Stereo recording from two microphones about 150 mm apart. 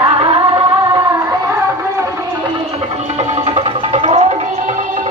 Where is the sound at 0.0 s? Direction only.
40° right (ahead or behind).